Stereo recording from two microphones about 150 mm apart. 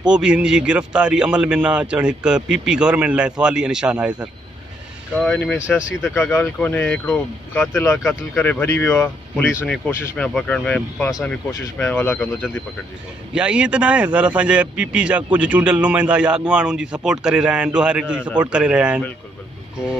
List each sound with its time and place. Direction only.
0.0 s speech: 5° right (ahead or behind)
5.2 s speech: 5° left (ahead or behind)
7.8 s speech: 15° left (ahead or behind)
13.3 s speech: 5° right (ahead or behind)